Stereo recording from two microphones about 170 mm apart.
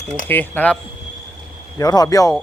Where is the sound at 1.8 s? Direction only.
20° left (ahead or behind).